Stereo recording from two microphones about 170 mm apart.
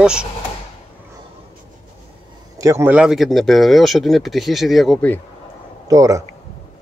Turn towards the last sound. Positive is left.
turn(degrees=-20)  # may be behind; listen again after turning